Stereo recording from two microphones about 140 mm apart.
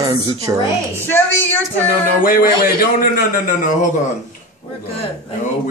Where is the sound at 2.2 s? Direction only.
90° left.